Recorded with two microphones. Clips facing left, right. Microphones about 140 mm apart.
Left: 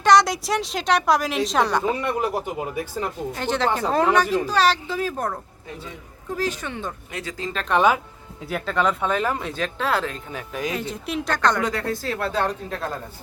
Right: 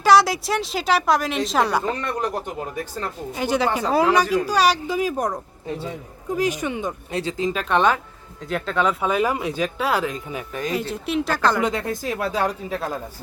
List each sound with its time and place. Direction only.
0.0 s a woman's voice: 5° right (ahead or behind)
1.8 s speech: 10° left (ahead or behind)
3.3 s speech: 10° right (ahead or behind)
7.1 s speech: 30° right (ahead or behind)
7.5 s a woman's voice: 5° right (ahead or behind)
10.5 s a woman's voice: centre (ahead or behind)
11.6 s speech: 20° right (ahead or behind)